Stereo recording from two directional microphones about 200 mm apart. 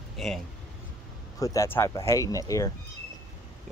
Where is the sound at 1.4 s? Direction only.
15° left (ahead or behind).